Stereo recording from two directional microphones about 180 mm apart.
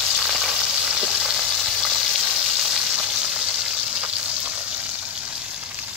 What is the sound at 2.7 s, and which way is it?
Frying, 5° right (ahead or behind).